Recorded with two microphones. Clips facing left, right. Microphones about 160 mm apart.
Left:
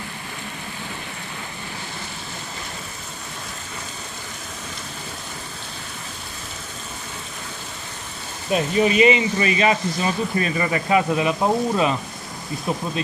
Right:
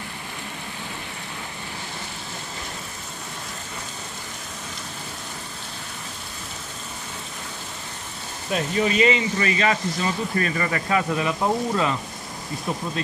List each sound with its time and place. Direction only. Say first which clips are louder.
8.5 s speech: left 4 dB; 20° left (ahead or behind)